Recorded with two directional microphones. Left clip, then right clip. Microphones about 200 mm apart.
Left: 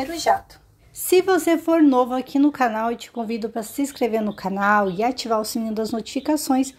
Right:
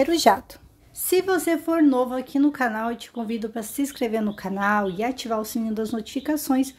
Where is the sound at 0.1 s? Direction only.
50° right (ahead or behind).